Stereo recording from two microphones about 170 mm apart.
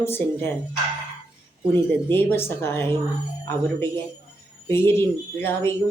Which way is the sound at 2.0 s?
15° left (ahead or behind).